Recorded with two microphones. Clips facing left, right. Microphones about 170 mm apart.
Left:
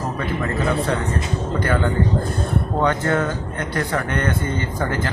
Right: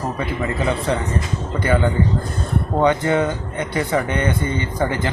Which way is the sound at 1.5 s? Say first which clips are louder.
Right 2 dB; 10° right (ahead or behind).